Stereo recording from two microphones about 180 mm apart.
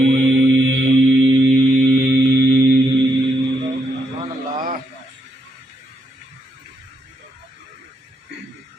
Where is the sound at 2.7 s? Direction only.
90° right.